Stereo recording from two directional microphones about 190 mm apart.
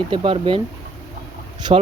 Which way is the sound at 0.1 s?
25° right (ahead or behind).